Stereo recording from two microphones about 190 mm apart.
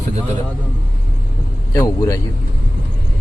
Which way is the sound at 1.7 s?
15° left (ahead or behind).